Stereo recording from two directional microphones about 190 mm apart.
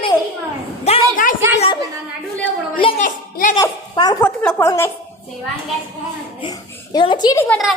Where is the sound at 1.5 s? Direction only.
30° left (ahead or behind).